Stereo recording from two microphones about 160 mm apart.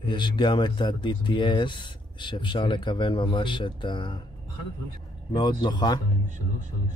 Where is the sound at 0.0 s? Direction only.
30° left (ahead or behind).